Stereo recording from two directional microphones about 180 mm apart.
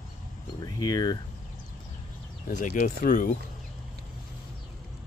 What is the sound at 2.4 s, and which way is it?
Speech, 50° left (ahead or behind).